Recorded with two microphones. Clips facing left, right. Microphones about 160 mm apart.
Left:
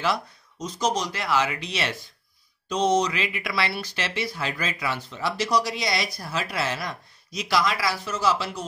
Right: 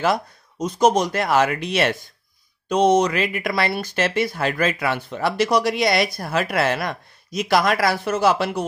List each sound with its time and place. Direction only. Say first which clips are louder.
0.0 s speech: right 5 dB; 50° right (ahead or behind)